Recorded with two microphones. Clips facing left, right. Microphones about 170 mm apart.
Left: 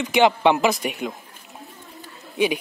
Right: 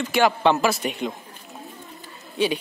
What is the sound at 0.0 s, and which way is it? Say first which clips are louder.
Speech: left 2 dB; 15° left (ahead or behind).